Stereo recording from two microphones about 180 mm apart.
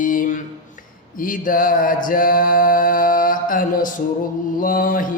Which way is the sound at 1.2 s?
50° left (ahead or behind).